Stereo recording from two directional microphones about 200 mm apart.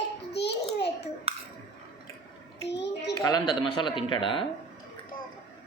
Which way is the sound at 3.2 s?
20° left (ahead or behind).